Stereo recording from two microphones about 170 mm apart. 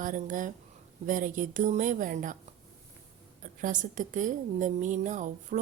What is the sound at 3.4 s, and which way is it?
A woman's voice, 50° right (ahead or behind).